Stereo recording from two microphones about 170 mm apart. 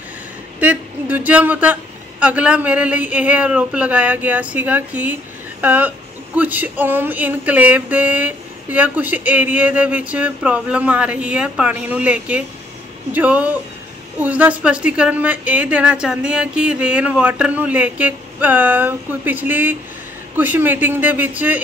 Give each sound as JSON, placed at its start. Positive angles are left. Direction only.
{"t": 0.6, "sound": "speech", "side_deg": -10}